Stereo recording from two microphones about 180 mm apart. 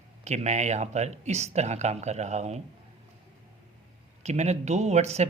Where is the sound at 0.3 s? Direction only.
40° right (ahead or behind).